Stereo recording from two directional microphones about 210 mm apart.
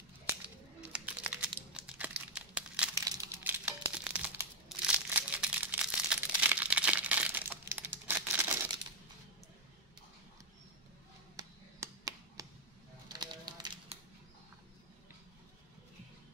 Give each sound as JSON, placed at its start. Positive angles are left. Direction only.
{"t": 0.3, "sound": "crumpling", "side_deg": -5}
{"t": 2.9, "sound": "crumpling", "side_deg": -15}
{"t": 11.3, "sound": "a sound", "side_deg": -15}
{"t": 13.1, "sound": "music", "side_deg": -20}